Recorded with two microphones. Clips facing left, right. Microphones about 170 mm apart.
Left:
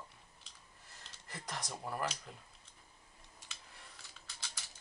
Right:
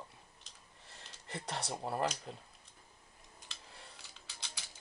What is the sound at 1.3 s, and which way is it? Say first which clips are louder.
Speech: right 4 dB; 30° right (ahead or behind).